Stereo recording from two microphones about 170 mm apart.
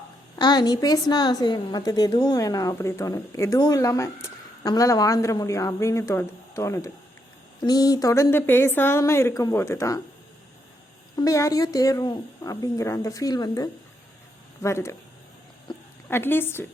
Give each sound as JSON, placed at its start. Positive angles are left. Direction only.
{"t": 0.3, "sound": "a woman's voice", "side_deg": 25}
{"t": 11.2, "sound": "a woman's voice", "side_deg": 20}
{"t": 16.0, "sound": "a woman's voice", "side_deg": 15}